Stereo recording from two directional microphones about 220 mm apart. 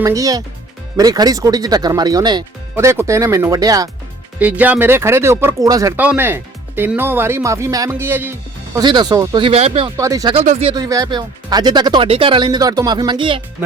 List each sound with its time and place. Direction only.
0.0 s speech: 15° right (ahead or behind)
10.0 s speech: 15° right (ahead or behind)
10.3 s speech: 30° right (ahead or behind)